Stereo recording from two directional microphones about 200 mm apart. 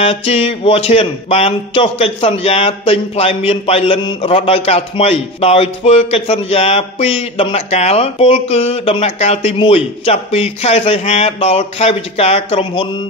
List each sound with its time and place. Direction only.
0.0 s speech: 30° left (ahead or behind)